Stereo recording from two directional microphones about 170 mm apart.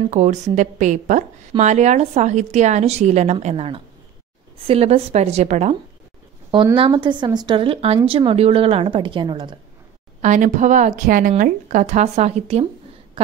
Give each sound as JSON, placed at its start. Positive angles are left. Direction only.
{"t": 0.1, "sound": "a woman's voice", "side_deg": -45}
{"t": 6.5, "sound": "speech", "side_deg": -30}
{"t": 10.2, "sound": "a woman's voice", "side_deg": -45}